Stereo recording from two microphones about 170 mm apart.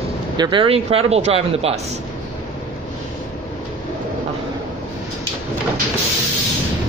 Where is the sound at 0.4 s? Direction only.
30° right (ahead or behind).